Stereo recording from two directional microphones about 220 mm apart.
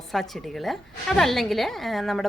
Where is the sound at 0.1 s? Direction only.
Centre (ahead or behind).